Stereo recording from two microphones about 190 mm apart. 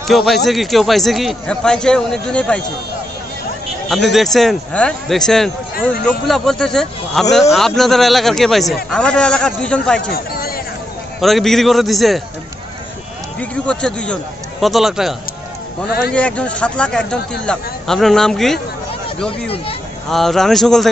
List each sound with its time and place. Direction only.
0.0 s a man's voice: centre (ahead or behind)
4.1 s speech: centre (ahead or behind)
10.1 s a sound: 50° left (ahead or behind)
11.1 s speech: centre (ahead or behind)
13.4 s speech: 5° left (ahead or behind)
20.1 s speech: centre (ahead or behind)